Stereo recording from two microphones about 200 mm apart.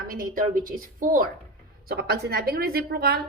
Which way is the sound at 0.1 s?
45° right (ahead or behind).